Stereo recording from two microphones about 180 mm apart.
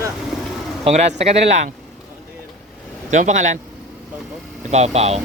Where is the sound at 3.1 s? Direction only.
45° right (ahead or behind).